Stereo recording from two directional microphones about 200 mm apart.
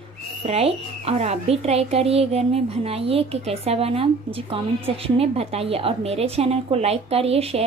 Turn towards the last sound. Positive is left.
turn(degrees=-30)  # may be behind; listen again after turning